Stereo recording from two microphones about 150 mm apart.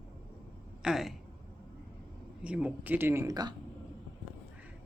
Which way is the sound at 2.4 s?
10° right (ahead or behind).